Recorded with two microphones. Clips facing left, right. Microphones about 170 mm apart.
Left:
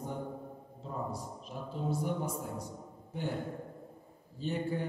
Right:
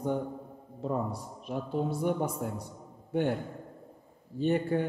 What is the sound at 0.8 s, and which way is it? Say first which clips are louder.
A man's voice: right 7 dB; 65° right (ahead or behind).